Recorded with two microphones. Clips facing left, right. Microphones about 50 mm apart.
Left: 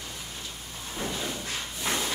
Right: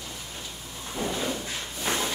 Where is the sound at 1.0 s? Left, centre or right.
Right.